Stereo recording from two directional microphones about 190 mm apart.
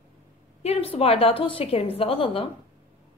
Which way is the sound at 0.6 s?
30° left (ahead or behind).